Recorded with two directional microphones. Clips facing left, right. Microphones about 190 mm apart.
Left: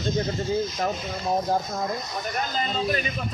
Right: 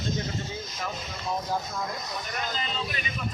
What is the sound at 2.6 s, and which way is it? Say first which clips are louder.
Speech: left 8 dB; 45° left (ahead or behind).